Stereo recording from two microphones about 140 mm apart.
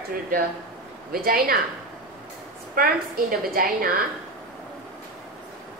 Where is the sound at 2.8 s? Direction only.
90° right.